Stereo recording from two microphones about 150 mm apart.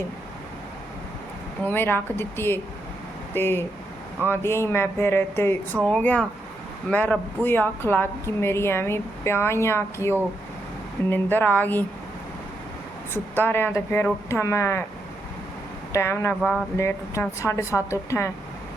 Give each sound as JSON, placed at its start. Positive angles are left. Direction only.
{"t": 1.6, "sound": "speech", "side_deg": 15}
{"t": 13.1, "sound": "speech", "side_deg": 15}
{"t": 15.9, "sound": "a woman's voice", "side_deg": 20}